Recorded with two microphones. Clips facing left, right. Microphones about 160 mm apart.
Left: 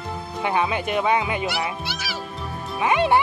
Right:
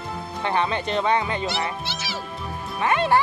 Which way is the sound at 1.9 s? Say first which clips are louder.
Even; 25° right (ahead or behind).